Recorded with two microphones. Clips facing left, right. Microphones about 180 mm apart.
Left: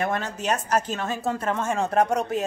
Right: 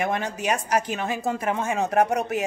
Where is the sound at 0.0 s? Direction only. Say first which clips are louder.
Right 1 dB; 15° right (ahead or behind).